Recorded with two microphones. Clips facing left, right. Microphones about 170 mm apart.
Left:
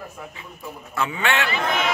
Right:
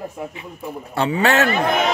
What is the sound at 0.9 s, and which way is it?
A man's voice, 35° right (ahead or behind).